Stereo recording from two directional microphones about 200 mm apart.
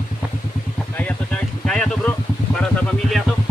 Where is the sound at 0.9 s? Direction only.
5° left (ahead or behind).